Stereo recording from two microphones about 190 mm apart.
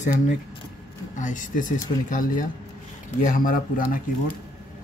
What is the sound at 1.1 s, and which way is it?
Speech, 40° left (ahead or behind).